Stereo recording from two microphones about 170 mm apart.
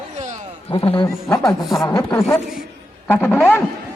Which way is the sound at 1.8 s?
20° left (ahead or behind).